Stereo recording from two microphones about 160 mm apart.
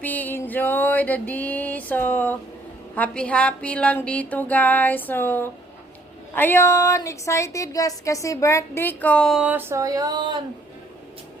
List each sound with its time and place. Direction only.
0.0 s a sound: 10° left (ahead or behind)
2.9 s music: 10° left (ahead or behind)
6.3 s speech: 15° left (ahead or behind)
9.4 s speech: 10° right (ahead or behind); by 10.4 s 30° right (ahead or behind)